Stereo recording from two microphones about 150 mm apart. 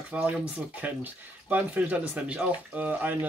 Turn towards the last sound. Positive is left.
turn(degrees=-10)  # may be behind; listen again after turning